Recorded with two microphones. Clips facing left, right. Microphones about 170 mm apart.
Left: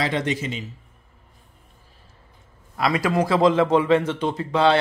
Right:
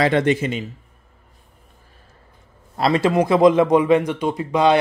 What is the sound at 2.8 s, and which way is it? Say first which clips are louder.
A man's voice: right 4 dB; 25° right (ahead or behind).